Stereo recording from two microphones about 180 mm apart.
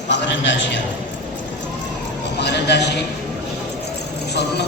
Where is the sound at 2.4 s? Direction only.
70° left (ahead or behind).